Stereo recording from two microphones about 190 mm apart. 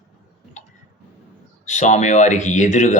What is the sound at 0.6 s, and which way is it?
Tick, 40° left (ahead or behind).